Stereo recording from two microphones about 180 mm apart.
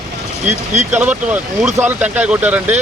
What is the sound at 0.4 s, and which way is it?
Speech, 40° right (ahead or behind).